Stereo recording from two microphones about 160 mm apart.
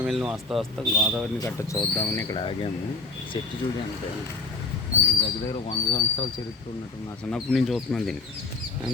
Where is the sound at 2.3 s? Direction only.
35° left (ahead or behind).